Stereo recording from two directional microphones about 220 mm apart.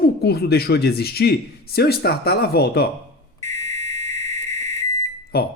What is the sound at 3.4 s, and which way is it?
Fire alarm, 15° left (ahead or behind).